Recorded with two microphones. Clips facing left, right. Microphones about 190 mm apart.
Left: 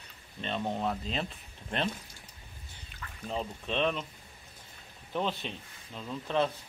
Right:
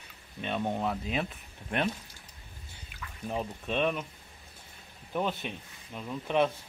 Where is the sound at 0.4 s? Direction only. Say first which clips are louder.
Right 1 dB; 10° right (ahead or behind).